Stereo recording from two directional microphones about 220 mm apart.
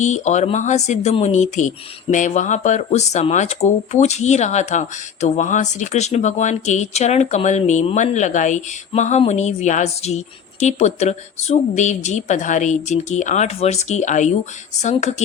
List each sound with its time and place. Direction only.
0.0 s speech: 30° left (ahead or behind)